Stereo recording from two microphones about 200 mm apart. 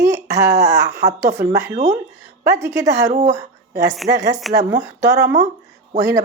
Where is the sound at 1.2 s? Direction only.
15° right (ahead or behind).